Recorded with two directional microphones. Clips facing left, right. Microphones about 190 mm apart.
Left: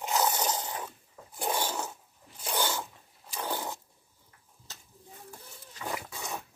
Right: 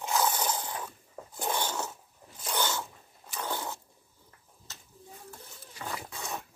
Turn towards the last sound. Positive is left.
turn(degrees=10)  # may be behind; listen again after turning